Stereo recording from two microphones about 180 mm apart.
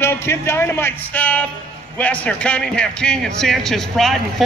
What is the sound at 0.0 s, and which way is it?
A man's voice, 15° left (ahead or behind).